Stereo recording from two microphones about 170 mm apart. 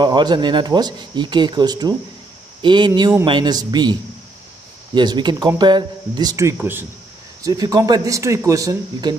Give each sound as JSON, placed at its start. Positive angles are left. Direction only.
{"t": 0.0, "sound": "speech", "side_deg": -25}